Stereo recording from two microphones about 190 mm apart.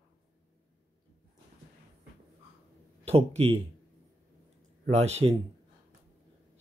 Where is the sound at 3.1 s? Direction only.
30° right (ahead or behind).